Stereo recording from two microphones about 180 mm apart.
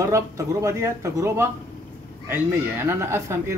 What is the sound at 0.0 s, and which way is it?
Speech, 15° right (ahead or behind).